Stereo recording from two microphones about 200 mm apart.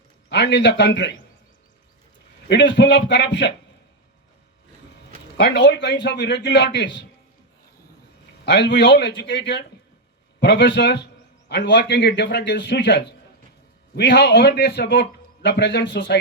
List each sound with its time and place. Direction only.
0.3 s a man's voice: 60° left (ahead or behind)
2.5 s a man's voice: 60° left (ahead or behind)
4.9 s a man's voice: 60° left (ahead or behind)
8.4 s a man's voice: 60° left (ahead or behind)